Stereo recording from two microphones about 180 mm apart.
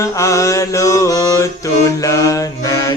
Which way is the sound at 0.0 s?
15° left (ahead or behind).